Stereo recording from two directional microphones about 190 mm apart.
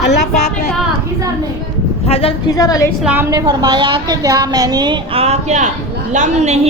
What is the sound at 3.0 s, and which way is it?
A woman's voice, 10° right (ahead or behind).